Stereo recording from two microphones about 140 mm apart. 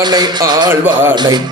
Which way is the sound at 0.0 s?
30° right (ahead or behind).